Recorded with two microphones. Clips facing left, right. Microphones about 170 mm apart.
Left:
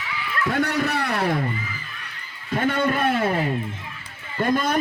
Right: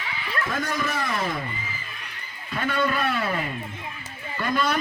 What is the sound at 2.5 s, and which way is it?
Speech, 50° left (ahead or behind).